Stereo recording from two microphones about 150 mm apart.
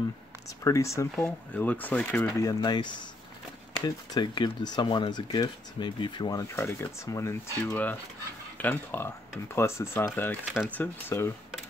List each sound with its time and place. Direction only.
0.7 s speech: 20° left (ahead or behind)
2.2 s speech: 25° left (ahead or behind)
6.5 s speech: 15° left (ahead or behind)